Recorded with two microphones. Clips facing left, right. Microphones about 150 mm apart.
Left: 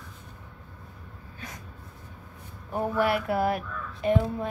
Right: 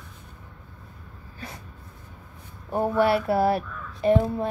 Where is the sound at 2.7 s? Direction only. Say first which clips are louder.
Right 4 dB; 30° right (ahead or behind).